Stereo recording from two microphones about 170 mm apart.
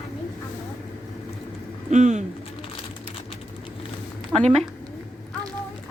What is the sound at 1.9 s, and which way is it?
Speech, 45° right (ahead or behind).